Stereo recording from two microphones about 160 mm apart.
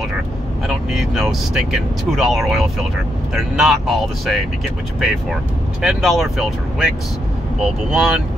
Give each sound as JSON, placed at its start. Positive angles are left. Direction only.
{"t": 0.7, "sound": "speech", "side_deg": 0}
{"t": 7.9, "sound": "speech", "side_deg": -5}